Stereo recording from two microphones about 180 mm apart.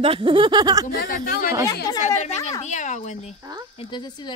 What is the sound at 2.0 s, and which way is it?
Speech, 40° left (ahead or behind).